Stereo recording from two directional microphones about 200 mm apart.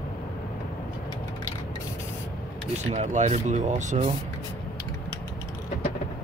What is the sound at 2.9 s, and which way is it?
Speech, 35° right (ahead or behind).